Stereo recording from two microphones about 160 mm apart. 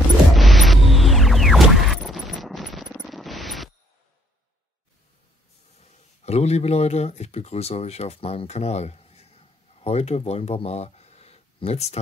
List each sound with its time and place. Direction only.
0.3 s music: centre (ahead or behind)
5.8 s speech: 40° left (ahead or behind)